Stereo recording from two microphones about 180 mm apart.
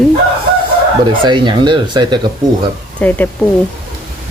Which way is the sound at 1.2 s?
25° right (ahead or behind).